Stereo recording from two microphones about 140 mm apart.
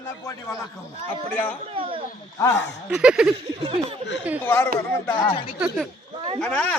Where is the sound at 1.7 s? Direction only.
40° right (ahead or behind).